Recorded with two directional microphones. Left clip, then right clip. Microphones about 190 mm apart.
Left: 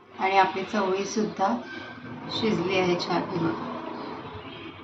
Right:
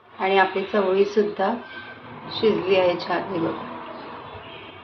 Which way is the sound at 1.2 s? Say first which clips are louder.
Right 4 dB; 35° right (ahead or behind).